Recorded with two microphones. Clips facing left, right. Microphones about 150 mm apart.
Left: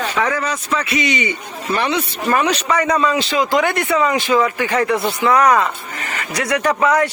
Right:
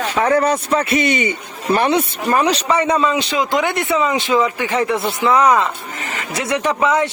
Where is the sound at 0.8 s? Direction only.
50° right (ahead or behind).